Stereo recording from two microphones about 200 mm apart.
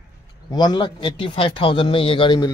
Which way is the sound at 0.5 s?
20° left (ahead or behind).